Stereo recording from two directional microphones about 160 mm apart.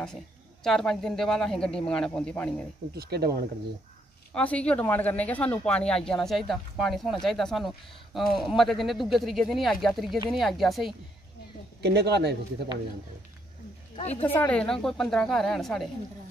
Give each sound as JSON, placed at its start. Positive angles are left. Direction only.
{"t": 0.7, "sound": "speech", "side_deg": 0}
{"t": 2.9, "sound": "speech", "side_deg": -85}
{"t": 4.3, "sound": "speech", "side_deg": 5}
{"t": 11.8, "sound": "speech", "side_deg": -90}
{"t": 13.9, "sound": "a woman's voice", "side_deg": 40}
{"t": 14.2, "sound": "speech", "side_deg": 15}